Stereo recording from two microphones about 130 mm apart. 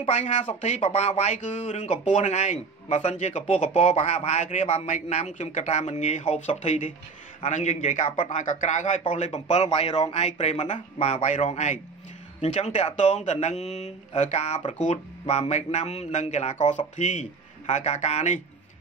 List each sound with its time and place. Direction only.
0.0 s a man's voice: 60° left (ahead or behind)
11.4 s speech: 65° left (ahead or behind)